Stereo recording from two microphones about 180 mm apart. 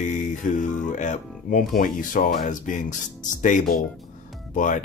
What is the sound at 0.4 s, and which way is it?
Music, 45° left (ahead or behind).